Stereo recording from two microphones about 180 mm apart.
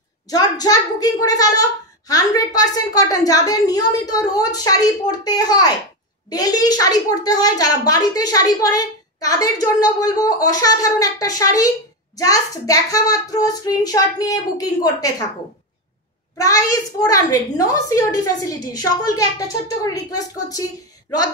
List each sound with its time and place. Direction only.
0.3 s a child's voice: 20° left (ahead or behind)
16.3 s a child's voice: 20° left (ahead or behind)